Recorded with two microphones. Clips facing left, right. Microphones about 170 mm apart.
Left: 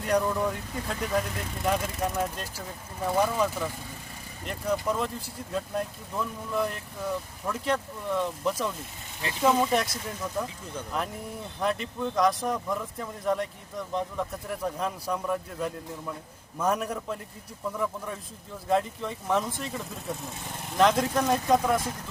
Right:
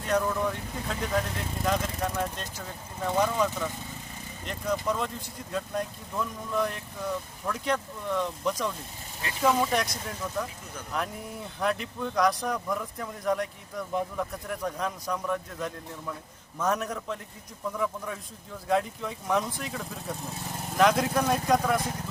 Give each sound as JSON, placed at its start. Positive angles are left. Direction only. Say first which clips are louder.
{"t": 0.1, "sound": "speech", "louder": "left 1 dB", "side_deg": 10}
{"t": 10.9, "sound": "speech", "louder": "right 1 dB", "side_deg": 0}